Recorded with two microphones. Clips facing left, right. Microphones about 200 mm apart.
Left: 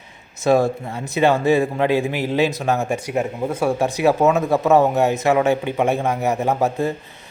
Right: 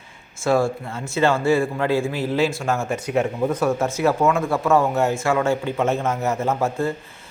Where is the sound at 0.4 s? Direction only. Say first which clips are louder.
Left 3 dB; 20° left (ahead or behind).